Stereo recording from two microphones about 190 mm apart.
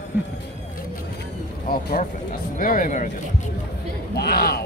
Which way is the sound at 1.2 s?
55° left (ahead or behind).